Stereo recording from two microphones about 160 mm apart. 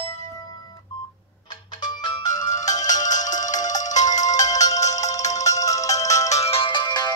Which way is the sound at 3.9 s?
25° left (ahead or behind).